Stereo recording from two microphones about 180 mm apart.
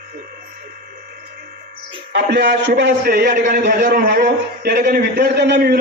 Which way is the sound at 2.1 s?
70° right (ahead or behind).